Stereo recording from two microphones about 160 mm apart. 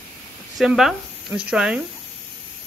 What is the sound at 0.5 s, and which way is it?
Speech, centre (ahead or behind).